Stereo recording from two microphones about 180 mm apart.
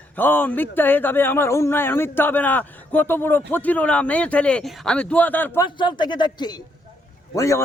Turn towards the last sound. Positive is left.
turn(degrees=15)  # may be behind; listen again after turning